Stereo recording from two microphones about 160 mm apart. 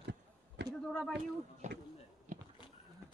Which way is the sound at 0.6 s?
90° right.